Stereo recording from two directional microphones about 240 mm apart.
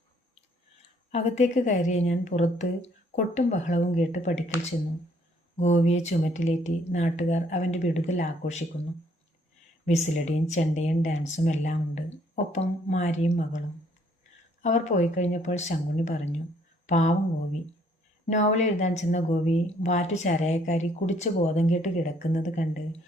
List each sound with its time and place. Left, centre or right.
1.1 s speech: left
5.5 s speech: left
9.8 s speech: left
14.6 s speech: left
18.3 s speech: left